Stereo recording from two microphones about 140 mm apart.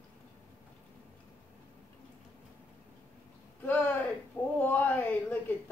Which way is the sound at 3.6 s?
10° left (ahead or behind).